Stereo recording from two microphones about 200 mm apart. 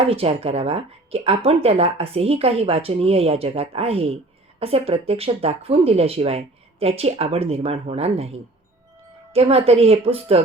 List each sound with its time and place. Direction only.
0.0 s a woman's voice: 30° right (ahead or behind)